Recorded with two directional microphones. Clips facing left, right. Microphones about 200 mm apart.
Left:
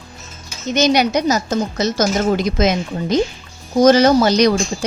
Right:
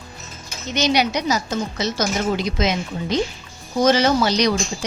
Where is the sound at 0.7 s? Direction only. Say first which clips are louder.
Left 5 dB; 45° left (ahead or behind).